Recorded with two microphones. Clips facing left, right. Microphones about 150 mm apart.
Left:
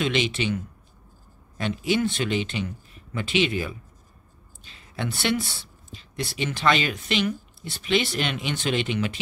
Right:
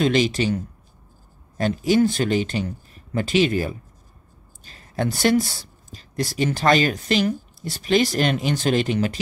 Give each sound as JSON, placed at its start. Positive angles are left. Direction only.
{"t": 0.0, "sound": "speech", "side_deg": -40}